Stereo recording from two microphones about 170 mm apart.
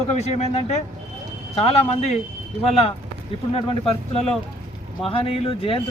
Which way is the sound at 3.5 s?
35° left (ahead or behind).